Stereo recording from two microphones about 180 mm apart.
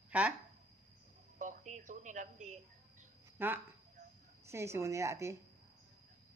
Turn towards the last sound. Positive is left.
turn(degrees=-15)  # may be behind; listen again after turning